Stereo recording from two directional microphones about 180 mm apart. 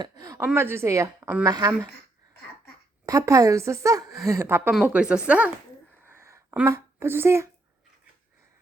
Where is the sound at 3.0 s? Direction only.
20° right (ahead or behind).